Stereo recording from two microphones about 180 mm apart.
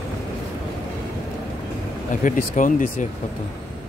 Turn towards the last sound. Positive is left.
turn(degrees=45)  # may be behind; listen again after turning